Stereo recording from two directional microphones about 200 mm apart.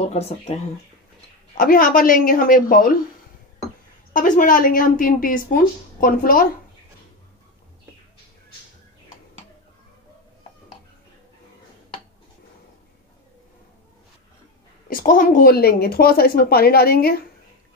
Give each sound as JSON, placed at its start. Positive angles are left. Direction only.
{"t": 0.0, "sound": "speech", "side_deg": 30}
{"t": 1.5, "sound": "a woman's voice", "side_deg": 45}
{"t": 4.1, "sound": "a woman's voice", "side_deg": 45}
{"t": 14.9, "sound": "a woman's voice", "side_deg": 45}